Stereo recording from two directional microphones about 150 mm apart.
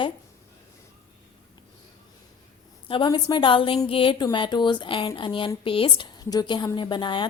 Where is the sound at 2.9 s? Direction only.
30° left (ahead or behind).